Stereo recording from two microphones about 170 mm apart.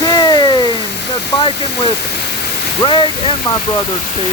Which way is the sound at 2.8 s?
30° left (ahead or behind).